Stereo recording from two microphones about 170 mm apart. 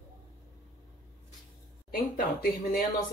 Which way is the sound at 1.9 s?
55° left (ahead or behind).